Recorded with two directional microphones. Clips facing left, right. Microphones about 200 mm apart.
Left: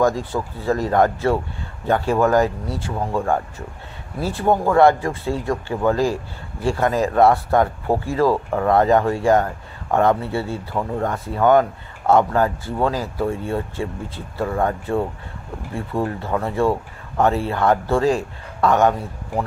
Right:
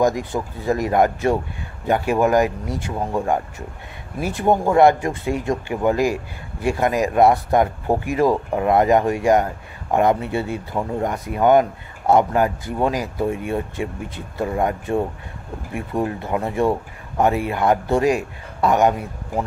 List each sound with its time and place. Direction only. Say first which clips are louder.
0.0 s speech: even; 15° right (ahead or behind)